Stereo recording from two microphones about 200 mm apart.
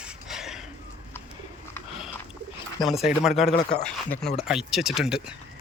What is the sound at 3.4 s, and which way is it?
Speech, 30° left (ahead or behind).